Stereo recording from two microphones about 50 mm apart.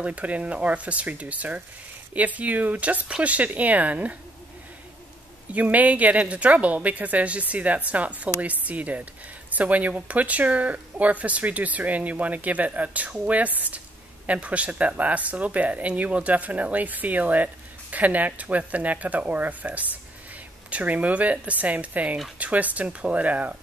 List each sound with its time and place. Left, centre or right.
0.0 s a woman's voice: right
5.5 s a woman's voice: right